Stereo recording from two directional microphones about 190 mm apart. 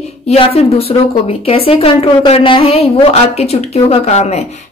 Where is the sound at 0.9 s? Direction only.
25° left (ahead or behind).